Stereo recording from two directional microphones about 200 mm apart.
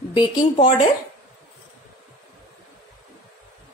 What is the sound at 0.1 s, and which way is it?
Speech, 25° left (ahead or behind).